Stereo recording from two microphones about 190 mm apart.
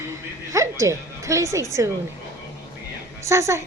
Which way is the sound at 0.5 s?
15° right (ahead or behind).